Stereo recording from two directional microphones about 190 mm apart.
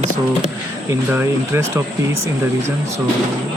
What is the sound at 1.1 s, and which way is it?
Speech, 10° right (ahead or behind).